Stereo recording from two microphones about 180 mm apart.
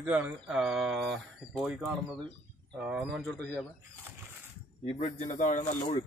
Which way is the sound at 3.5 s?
10° right (ahead or behind).